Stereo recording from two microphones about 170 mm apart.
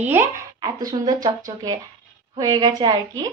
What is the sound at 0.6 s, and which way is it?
Speech, 20° right (ahead or behind).